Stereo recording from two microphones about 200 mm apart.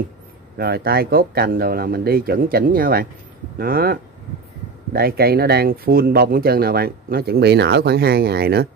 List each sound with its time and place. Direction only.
0.6 s speech: 50° right (ahead or behind)